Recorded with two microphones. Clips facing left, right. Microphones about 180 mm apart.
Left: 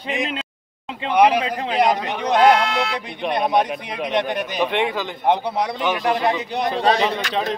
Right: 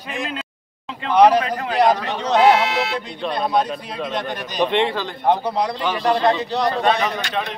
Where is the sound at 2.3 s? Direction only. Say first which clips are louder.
Even; 5° right (ahead or behind).